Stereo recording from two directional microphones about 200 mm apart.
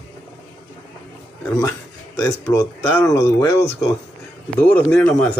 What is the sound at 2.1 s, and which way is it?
Speech, 15° left (ahead or behind).